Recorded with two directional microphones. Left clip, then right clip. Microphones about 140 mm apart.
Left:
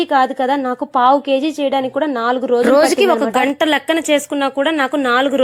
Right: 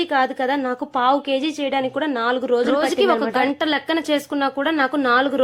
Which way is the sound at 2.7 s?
40° left (ahead or behind).